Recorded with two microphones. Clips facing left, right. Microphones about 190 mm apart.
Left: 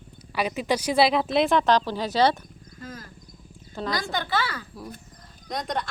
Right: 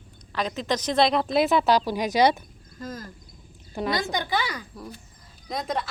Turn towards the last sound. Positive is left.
turn(degrees=0)  # may be behind; listen again after turning